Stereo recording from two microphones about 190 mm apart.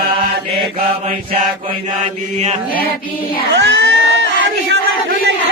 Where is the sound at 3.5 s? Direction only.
70° right (ahead or behind).